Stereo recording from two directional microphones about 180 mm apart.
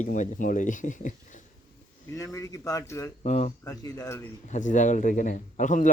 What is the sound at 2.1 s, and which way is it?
Speech, 15° left (ahead or behind).